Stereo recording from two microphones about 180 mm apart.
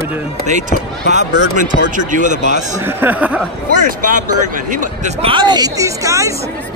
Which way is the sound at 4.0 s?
45° right (ahead or behind).